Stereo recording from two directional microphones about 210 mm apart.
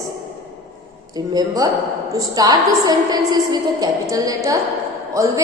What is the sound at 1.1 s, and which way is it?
A woman's voice, 20° right (ahead or behind).